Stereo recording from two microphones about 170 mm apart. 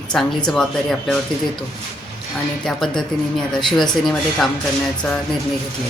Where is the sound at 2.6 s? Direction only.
5° left (ahead or behind).